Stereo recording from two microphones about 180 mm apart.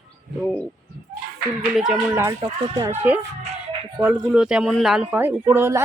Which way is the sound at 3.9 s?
10° right (ahead or behind).